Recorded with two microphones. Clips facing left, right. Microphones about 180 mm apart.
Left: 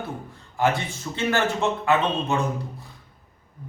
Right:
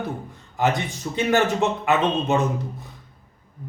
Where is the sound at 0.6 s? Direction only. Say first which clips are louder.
Right 1 dB; 20° right (ahead or behind).